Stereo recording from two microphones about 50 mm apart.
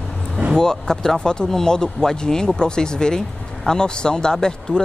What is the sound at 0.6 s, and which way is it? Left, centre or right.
Speech, centre.